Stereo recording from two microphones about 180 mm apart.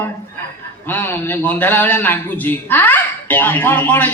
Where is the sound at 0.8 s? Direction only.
10° left (ahead or behind).